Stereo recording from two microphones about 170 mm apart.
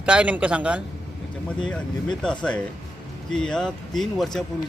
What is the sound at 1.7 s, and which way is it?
A man's voice, 5° left (ahead or behind).